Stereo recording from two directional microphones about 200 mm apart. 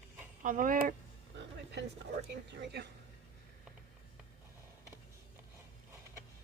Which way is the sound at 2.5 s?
60° right (ahead or behind).